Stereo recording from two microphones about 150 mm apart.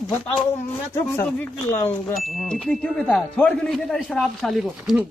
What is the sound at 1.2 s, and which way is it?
Speech, 15° left (ahead or behind).